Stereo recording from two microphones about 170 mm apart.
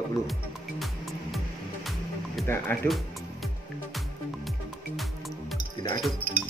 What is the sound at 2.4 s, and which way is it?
Speech, 15° left (ahead or behind).